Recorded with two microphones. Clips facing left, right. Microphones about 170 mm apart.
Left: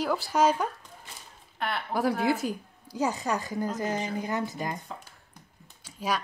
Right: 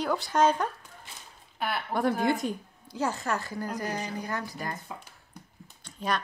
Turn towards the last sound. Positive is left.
turn(degrees=5)  # may be behind; listen again after turning